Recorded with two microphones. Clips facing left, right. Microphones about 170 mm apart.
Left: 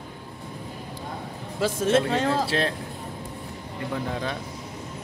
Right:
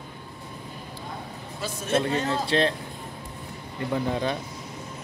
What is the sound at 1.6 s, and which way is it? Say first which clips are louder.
Speech: left 4 dB; 90° left.